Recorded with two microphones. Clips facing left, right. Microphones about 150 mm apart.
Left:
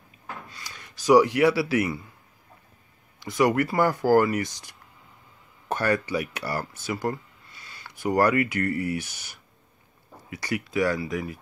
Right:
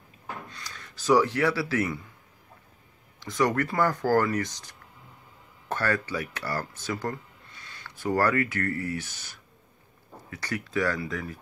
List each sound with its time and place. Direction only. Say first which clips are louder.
0.5 s speech: even; 10° left (ahead or behind)
3.2 s speech: left 3 dB; 10° left (ahead or behind)